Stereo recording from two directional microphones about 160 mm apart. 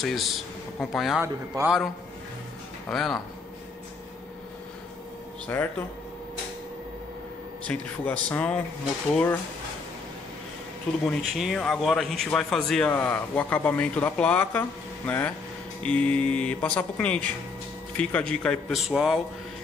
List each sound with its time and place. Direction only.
0.0 s speech: centre (ahead or behind)
1.2 s a man's voice: 15° right (ahead or behind)
2.9 s speech: centre (ahead or behind)
5.5 s speech: 15° left (ahead or behind)
7.6 s speech: 10° left (ahead or behind)
11.1 s speech: centre (ahead or behind)